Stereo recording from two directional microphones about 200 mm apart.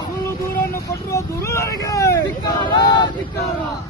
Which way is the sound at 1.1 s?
15° left (ahead or behind).